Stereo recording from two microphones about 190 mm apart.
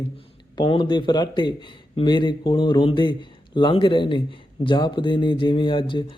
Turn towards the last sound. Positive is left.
turn(degrees=25)  # may be behind; listen again after turning